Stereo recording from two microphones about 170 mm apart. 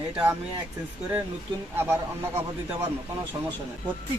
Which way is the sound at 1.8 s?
15° right (ahead or behind).